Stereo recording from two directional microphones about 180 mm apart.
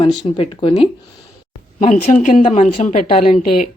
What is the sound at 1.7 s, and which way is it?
A woman's voice, 45° left (ahead or behind).